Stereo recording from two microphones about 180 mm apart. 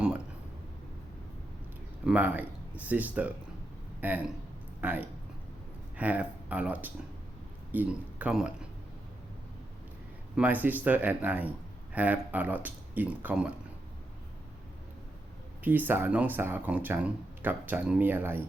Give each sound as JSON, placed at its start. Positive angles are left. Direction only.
{"t": 2.0, "sound": "speech", "side_deg": -10}
{"t": 10.3, "sound": "speech", "side_deg": -10}
{"t": 15.6, "sound": "speech", "side_deg": -10}